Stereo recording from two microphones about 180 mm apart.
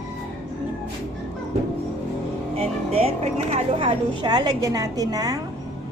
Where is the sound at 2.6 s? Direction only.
35° right (ahead or behind).